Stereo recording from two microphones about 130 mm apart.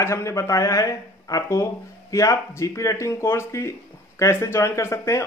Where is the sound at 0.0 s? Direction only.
20° left (ahead or behind).